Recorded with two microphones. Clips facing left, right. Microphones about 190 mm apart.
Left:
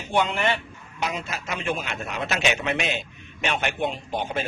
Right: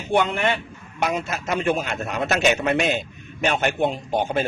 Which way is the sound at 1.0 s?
50° right (ahead or behind).